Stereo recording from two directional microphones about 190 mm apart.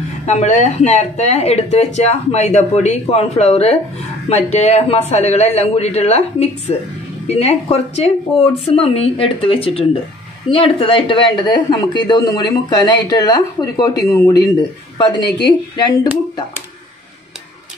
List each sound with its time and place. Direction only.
0.3 s speech: 35° left (ahead or behind)
15.2 s a woman's voice: 60° left (ahead or behind)
15.7 s speech: 25° left (ahead or behind)